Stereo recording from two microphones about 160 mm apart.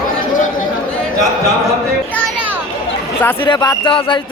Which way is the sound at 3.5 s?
25° left (ahead or behind).